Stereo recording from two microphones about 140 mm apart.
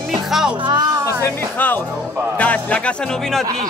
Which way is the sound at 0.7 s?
25° right (ahead or behind).